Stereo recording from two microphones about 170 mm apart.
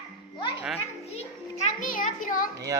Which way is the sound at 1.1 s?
40° left (ahead or behind).